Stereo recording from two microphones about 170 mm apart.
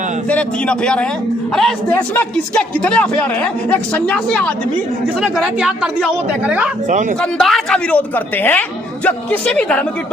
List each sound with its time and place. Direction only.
0.3 s a man's voice: 5° left (ahead or behind)
5.0 s speech: 5° right (ahead or behind)
6.8 s speech: 45° right (ahead or behind)
7.2 s a man's voice: 5° left (ahead or behind)